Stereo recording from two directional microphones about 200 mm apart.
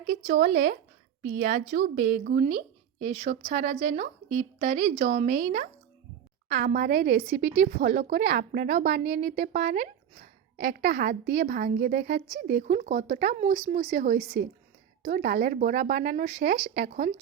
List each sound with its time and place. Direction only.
0.3 s a woman's voice: 45° right (ahead or behind)